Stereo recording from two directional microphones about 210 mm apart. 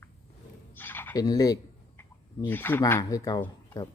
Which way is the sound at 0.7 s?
10° left (ahead or behind).